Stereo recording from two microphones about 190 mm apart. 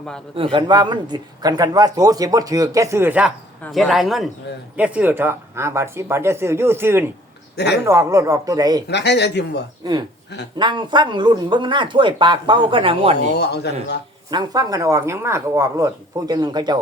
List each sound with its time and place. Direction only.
0.3 s speech: 25° right (ahead or behind)
7.5 s speech: 60° left (ahead or behind)
7.9 s speech: 15° right (ahead or behind)
8.9 s a man's voice: 60° left (ahead or behind)
10.6 s speech: 25° right (ahead or behind)
13.3 s a man's voice: 60° left (ahead or behind)
14.3 s speech: 20° right (ahead or behind)